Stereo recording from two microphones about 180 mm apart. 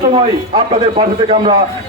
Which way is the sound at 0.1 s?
35° right (ahead or behind).